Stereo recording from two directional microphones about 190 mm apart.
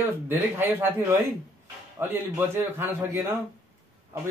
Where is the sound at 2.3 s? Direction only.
10° right (ahead or behind).